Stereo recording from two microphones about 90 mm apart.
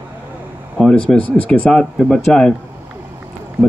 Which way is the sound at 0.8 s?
10° left (ahead or behind).